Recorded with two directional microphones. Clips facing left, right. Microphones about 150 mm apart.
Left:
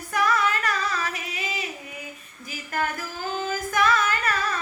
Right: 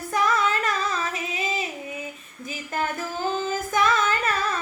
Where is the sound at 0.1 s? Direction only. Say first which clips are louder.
Even; 25° right (ahead or behind).